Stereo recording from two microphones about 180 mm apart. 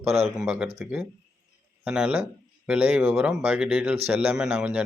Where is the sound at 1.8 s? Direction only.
5° right (ahead or behind).